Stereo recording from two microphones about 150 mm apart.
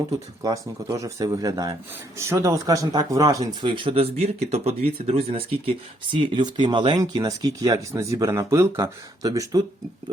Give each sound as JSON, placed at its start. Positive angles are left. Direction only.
{"t": 0.4, "sound": "speech", "side_deg": -20}